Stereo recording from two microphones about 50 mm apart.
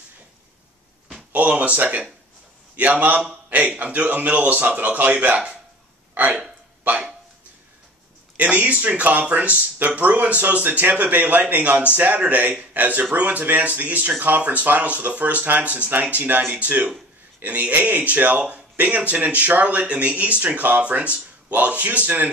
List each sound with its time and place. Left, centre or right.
1.3 s speech: right
6.8 s a sound: right
8.4 s speech: right
16.5 s speech: right